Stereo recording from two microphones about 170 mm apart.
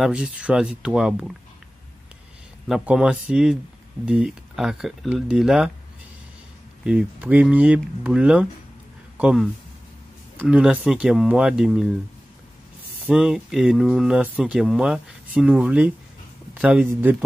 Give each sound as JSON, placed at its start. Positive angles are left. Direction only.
{"t": 0.0, "sound": "speech", "side_deg": -5}
{"t": 2.7, "sound": "speech", "side_deg": -5}
{"t": 6.8, "sound": "speech", "side_deg": -5}
{"t": 13.0, "sound": "speech", "side_deg": -5}